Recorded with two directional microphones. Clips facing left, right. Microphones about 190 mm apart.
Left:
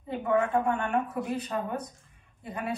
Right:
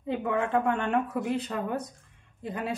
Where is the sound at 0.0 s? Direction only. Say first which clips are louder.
Left 2 dB; 90° right.